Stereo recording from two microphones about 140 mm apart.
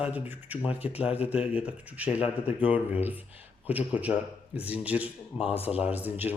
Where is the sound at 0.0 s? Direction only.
10° right (ahead or behind).